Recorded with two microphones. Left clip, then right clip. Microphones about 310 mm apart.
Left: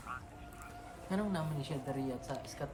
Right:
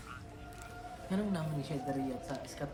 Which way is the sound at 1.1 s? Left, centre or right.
Centre.